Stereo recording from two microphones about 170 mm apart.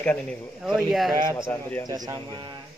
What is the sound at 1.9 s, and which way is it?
Speech, 20° right (ahead or behind).